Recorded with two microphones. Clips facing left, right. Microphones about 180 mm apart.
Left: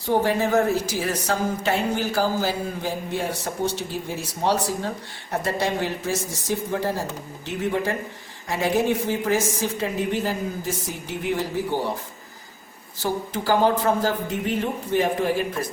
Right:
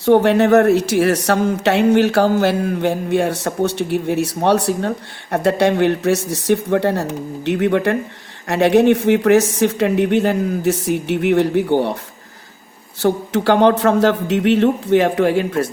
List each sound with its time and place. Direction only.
0.0 s speech: 70° right (ahead or behind)
13.0 s speech: 75° right (ahead or behind)